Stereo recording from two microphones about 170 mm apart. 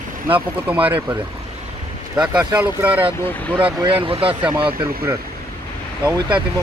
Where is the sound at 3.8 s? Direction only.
35° right (ahead or behind).